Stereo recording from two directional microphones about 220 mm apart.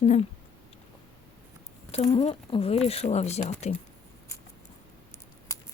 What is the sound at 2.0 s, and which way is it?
Speech, 25° left (ahead or behind).